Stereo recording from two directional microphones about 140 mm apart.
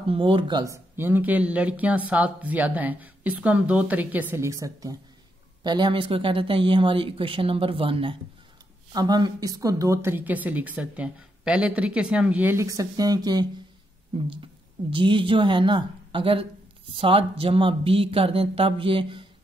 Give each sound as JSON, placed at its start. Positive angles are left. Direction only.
{"t": 0.1, "sound": "speech", "side_deg": -40}
{"t": 0.9, "sound": "speech", "side_deg": -15}
{"t": 8.9, "sound": "speech", "side_deg": -30}
{"t": 12.7, "sound": "speech", "side_deg": -25}